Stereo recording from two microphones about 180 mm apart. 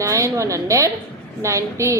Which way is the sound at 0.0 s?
15° right (ahead or behind).